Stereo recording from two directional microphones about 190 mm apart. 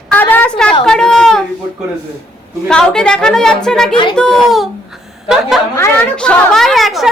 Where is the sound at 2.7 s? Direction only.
5° left (ahead or behind).